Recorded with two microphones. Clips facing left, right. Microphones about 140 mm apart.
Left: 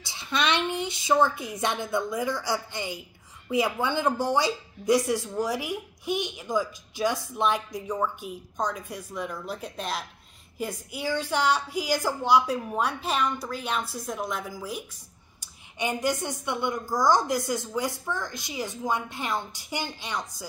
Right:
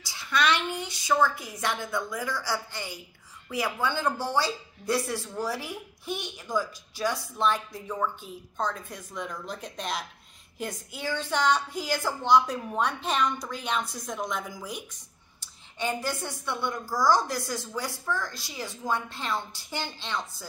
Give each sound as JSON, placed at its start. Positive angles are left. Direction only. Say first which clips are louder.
{"t": 0.0, "sound": "speech", "louder": "right 1 dB", "side_deg": 25}
{"t": 15.4, "sound": "speech", "louder": "left 1 dB", "side_deg": 15}